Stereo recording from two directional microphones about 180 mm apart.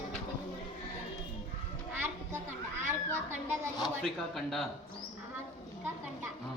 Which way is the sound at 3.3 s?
40° right (ahead or behind).